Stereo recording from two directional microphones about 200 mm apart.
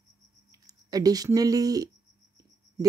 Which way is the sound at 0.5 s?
20° right (ahead or behind).